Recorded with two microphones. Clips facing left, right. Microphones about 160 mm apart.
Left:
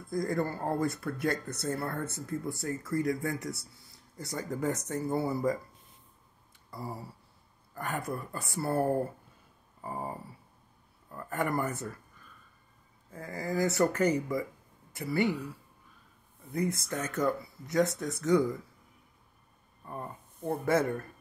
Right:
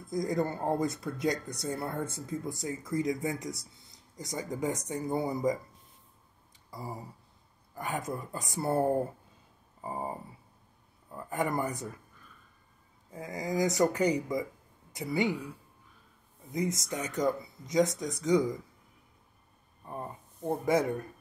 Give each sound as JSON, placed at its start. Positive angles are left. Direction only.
{"t": 0.0, "sound": "speech", "side_deg": -20}
{"t": 6.7, "sound": "a sound", "side_deg": -15}
{"t": 7.7, "sound": "speech", "side_deg": -15}
{"t": 13.1, "sound": "speech", "side_deg": -15}
{"t": 16.5, "sound": "speech", "side_deg": -15}
{"t": 19.8, "sound": "speech", "side_deg": -20}